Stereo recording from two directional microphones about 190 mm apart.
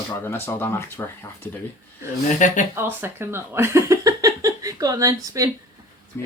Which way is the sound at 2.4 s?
40° left (ahead or behind).